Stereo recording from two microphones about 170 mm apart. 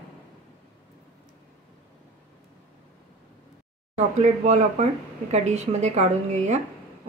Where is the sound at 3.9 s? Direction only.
40° right (ahead or behind).